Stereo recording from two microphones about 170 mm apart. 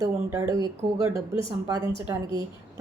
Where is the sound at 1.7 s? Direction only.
20° right (ahead or behind).